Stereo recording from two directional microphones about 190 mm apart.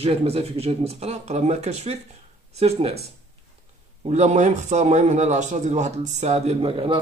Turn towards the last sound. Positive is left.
turn(degrees=-25)  # may be behind; listen again after turning